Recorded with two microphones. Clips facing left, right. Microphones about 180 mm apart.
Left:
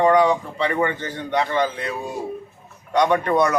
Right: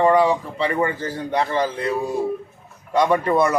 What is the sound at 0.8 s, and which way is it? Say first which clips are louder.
Speech: right 1 dB; 35° right (ahead or behind).